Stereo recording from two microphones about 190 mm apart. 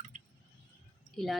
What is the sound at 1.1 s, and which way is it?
Speech, centre (ahead or behind).